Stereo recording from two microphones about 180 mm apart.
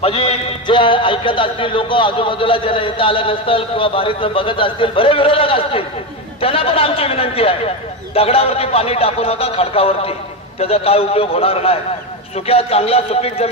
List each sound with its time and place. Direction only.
0.0 s a man's voice: 30° left (ahead or behind)